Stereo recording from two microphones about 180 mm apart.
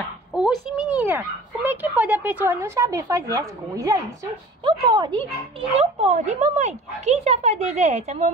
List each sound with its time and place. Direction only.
0.3 s speech: centre (ahead or behind); by 5.2 s 25° right (ahead or behind)
5.8 s speech: 35° right (ahead or behind)